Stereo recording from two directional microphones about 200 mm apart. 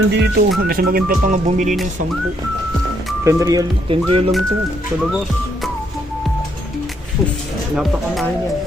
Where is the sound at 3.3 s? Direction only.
15° right (ahead or behind).